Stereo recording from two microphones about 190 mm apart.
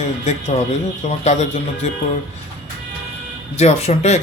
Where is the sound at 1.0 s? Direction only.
35° left (ahead or behind).